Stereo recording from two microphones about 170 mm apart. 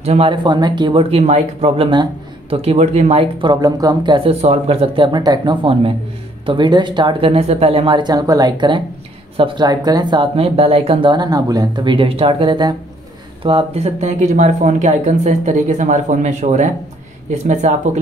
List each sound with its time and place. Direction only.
0.0 s speech: 35° right (ahead or behind)